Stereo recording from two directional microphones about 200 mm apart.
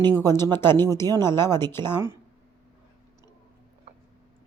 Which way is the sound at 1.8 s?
20° right (ahead or behind).